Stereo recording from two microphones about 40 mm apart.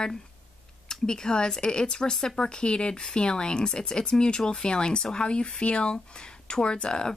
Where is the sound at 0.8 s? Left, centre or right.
Centre.